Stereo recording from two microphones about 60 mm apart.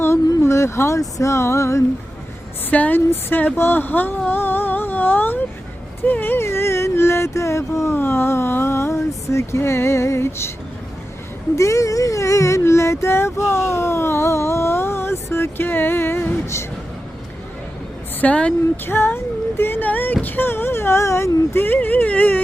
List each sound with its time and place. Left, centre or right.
0.4 s speech: left
2.6 s a woman's voice: left
4.3 s music: left
7.9 s speech: left
11.5 s speech: left
18.2 s a woman's voice: left
18.9 s a sound: left
20.2 s speech: left
21.8 s speech: left